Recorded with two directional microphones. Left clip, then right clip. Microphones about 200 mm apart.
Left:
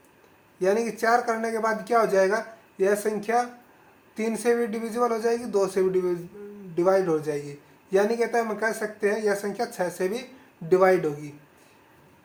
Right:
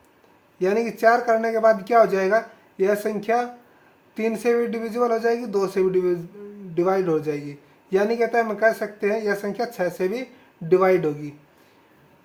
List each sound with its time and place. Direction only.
0.6 s speech: 35° right (ahead or behind)